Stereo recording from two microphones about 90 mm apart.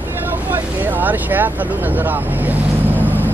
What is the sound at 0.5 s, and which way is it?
Speech, 20° right (ahead or behind).